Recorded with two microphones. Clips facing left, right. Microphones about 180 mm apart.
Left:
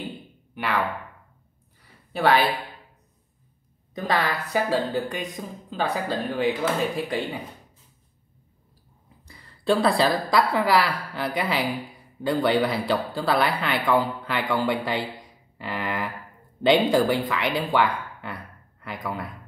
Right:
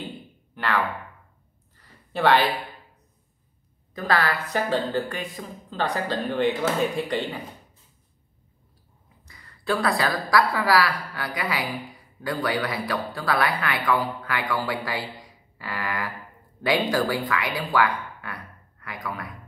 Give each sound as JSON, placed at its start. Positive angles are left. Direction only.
{"t": 2.1, "sound": "speech", "side_deg": 5}
{"t": 3.9, "sound": "speech", "side_deg": 20}
{"t": 9.3, "sound": "a woman's voice", "side_deg": 25}